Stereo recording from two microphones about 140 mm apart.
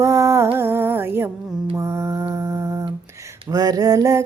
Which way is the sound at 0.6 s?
15° right (ahead or behind).